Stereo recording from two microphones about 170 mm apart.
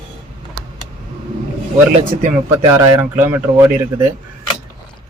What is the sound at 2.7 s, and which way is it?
Speech, 15° right (ahead or behind).